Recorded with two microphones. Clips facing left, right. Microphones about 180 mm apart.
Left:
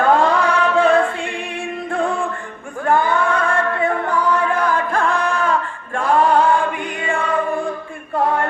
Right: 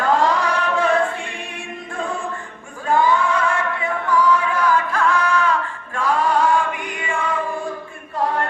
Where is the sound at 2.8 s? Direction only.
60° left (ahead or behind).